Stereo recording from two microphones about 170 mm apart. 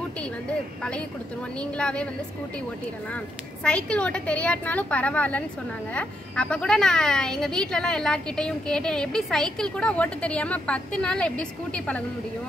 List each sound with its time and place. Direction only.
1.6 s a woman's voice: 5° left (ahead or behind)
3.6 s a woman's voice: 5° left (ahead or behind)